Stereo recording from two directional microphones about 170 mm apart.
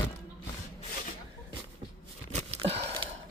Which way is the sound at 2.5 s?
35° right (ahead or behind).